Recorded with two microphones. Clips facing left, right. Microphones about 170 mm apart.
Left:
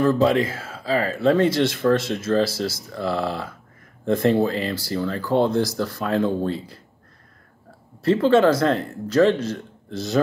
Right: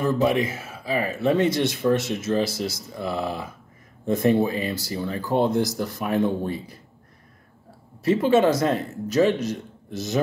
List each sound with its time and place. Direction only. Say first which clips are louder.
0.3 s speech: left 2 dB; 20° right (ahead or behind)
8.0 s speech: left 2 dB; 10° right (ahead or behind)